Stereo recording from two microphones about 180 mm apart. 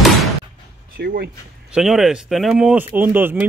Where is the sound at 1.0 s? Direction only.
65° right (ahead or behind).